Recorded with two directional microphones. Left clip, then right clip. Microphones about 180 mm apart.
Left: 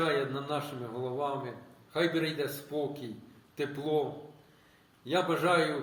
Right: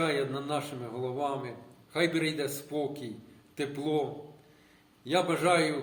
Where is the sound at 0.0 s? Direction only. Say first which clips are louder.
Even; 20° right (ahead or behind).